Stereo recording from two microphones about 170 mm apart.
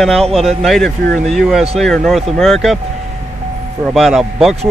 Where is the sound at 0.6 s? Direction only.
Centre (ahead or behind).